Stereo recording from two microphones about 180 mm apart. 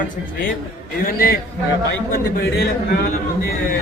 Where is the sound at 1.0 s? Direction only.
55° left (ahead or behind).